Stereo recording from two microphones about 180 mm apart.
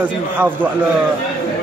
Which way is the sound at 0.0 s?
10° right (ahead or behind).